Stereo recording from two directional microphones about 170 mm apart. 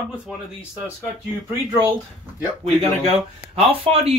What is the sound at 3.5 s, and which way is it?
Speech, 35° right (ahead or behind).